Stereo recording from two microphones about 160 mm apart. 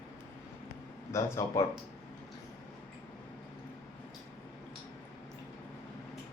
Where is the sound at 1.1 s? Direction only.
20° left (ahead or behind).